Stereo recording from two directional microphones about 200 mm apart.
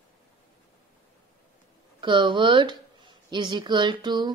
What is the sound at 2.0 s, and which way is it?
A woman's voice, 25° right (ahead or behind).